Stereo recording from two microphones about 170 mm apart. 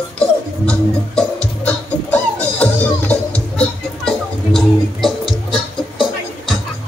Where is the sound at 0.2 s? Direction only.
5° left (ahead or behind).